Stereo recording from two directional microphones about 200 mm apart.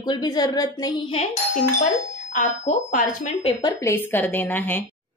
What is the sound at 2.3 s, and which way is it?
Speech, 40° left (ahead or behind).